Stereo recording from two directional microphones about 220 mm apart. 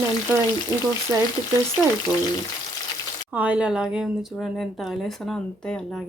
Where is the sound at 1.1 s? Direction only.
10° right (ahead or behind).